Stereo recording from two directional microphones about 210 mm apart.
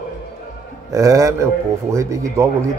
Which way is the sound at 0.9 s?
15° right (ahead or behind).